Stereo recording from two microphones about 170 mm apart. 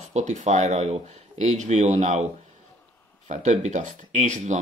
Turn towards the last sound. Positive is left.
turn(degrees=-45)  # may be behind; listen again after turning